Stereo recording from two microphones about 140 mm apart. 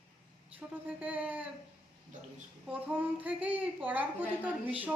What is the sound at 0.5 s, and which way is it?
Speech, 10° right (ahead or behind).